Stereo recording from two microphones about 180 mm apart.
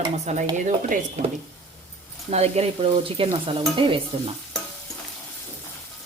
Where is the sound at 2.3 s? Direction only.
35° right (ahead or behind).